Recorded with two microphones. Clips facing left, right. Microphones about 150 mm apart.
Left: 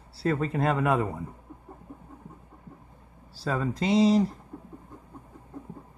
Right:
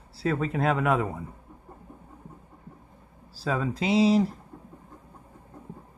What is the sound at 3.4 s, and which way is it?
Speech, 5° right (ahead or behind).